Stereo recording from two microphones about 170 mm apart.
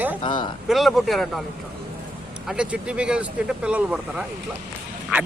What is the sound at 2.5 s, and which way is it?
Speech, 5° right (ahead or behind).